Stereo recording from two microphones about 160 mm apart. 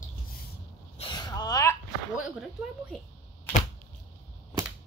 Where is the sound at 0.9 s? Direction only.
30° left (ahead or behind).